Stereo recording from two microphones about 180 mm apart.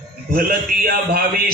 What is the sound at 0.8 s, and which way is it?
Speech, 55° right (ahead or behind).